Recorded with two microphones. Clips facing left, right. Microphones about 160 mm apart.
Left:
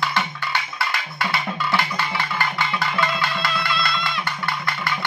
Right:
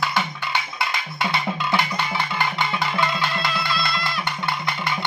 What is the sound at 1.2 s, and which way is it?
Music, 20° right (ahead or behind).